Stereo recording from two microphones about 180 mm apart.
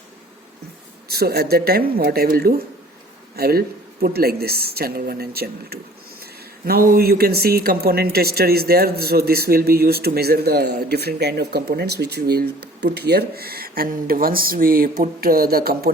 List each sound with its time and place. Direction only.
1.0 s speech: 60° right (ahead or behind)